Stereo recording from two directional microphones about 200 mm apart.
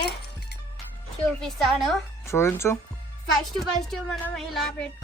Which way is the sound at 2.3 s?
15° left (ahead or behind).